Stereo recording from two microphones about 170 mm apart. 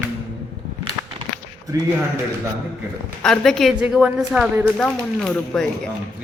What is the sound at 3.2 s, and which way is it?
A woman's voice, 5° left (ahead or behind).